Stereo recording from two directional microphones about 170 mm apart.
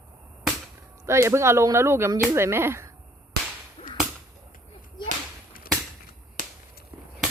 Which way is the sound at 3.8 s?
35° left (ahead or behind).